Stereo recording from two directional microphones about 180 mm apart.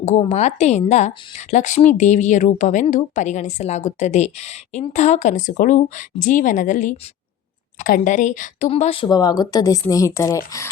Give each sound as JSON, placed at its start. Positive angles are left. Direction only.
{"t": 0.0, "sound": "a woman's voice", "side_deg": 35}